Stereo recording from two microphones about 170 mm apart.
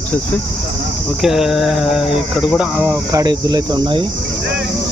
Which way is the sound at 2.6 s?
10° right (ahead or behind).